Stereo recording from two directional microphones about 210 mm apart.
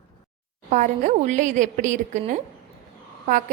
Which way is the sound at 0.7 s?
35° right (ahead or behind).